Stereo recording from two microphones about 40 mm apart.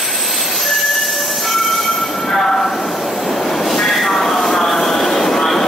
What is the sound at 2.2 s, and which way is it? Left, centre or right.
Train, centre.